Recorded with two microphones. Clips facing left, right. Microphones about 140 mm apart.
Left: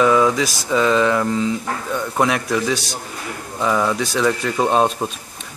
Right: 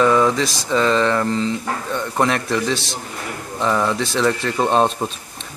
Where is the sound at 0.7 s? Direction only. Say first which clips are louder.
Left 1 dB; 5° left (ahead or behind).